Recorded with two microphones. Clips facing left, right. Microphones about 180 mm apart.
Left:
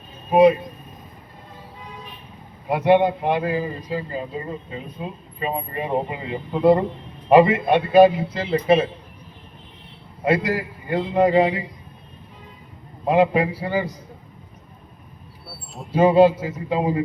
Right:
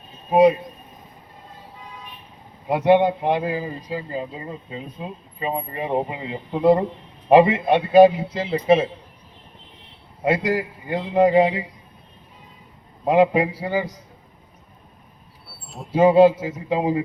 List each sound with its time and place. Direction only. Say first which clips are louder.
0.3 s speech: left 1 dB; 15° right (ahead or behind)
2.6 s speech: even; 20° right (ahead or behind)
5.4 s speech: even; 25° right (ahead or behind)
10.2 s speech: even; 20° right (ahead or behind)
13.1 s speech: right 1 dB; 20° right (ahead or behind)
15.9 s speech: right 1 dB; 15° right (ahead or behind)